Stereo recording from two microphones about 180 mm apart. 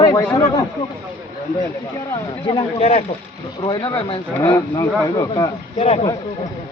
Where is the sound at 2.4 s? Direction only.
30° left (ahead or behind).